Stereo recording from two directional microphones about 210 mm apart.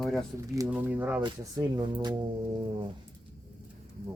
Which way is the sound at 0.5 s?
10° right (ahead or behind).